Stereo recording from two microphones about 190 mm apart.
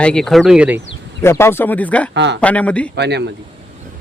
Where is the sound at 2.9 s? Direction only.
60° right (ahead or behind).